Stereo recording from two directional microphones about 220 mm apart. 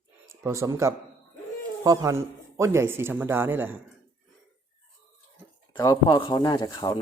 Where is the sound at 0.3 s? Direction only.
15° right (ahead or behind).